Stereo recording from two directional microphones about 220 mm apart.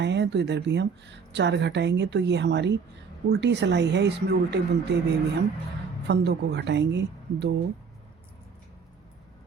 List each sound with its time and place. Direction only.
0.0 s speech: 55° right (ahead or behind)